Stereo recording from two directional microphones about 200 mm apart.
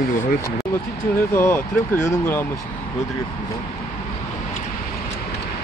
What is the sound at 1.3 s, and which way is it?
Speech, 10° left (ahead or behind).